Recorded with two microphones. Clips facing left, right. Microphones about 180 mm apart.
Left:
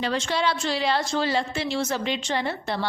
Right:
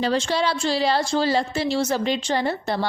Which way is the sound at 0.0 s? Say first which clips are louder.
Right 3 dB; 35° right (ahead or behind).